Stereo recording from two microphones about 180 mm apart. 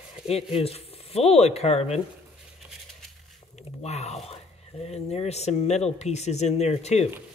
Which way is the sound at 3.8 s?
35° left (ahead or behind).